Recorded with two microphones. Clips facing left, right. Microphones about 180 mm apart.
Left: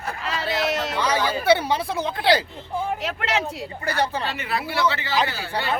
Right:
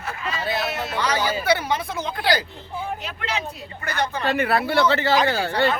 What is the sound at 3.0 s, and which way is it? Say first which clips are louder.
Speech: left 4 dB; 80° left.